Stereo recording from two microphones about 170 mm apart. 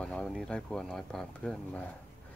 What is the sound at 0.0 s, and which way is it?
Speech, 5° left (ahead or behind).